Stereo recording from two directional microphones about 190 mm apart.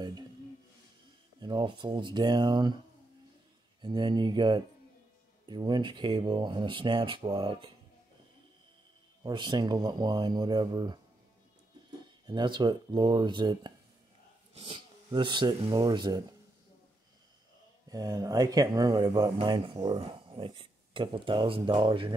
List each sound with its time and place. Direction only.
0.0 s a sound: 20° right (ahead or behind)
1.4 s speech: 25° right (ahead or behind)
3.8 s speech: 25° right (ahead or behind)
9.2 s speech: 25° right (ahead or behind)
12.3 s speech: 25° right (ahead or behind)
17.8 s speech: 20° right (ahead or behind)